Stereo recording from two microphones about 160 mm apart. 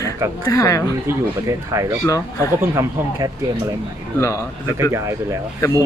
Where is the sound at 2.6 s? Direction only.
20° right (ahead or behind).